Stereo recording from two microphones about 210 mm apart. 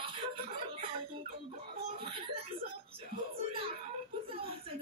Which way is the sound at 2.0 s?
25° right (ahead or behind).